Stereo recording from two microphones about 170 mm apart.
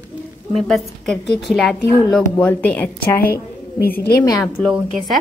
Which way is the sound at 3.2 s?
60° left (ahead or behind).